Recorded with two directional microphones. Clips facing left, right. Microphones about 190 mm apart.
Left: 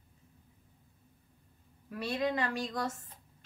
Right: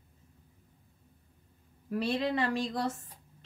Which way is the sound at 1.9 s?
30° right (ahead or behind).